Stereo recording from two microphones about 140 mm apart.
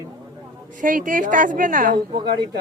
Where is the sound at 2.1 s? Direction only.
30° right (ahead or behind).